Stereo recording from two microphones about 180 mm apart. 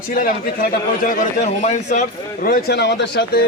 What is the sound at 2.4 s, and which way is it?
Speech, 60° left (ahead or behind).